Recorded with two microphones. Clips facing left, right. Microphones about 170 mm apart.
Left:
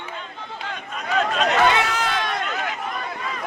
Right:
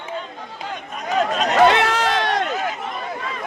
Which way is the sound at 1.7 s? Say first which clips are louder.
Right 4 dB; 75° right (ahead or behind).